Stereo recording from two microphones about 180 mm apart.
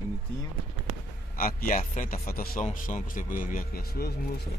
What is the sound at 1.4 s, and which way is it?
A man's voice, 50° left (ahead or behind).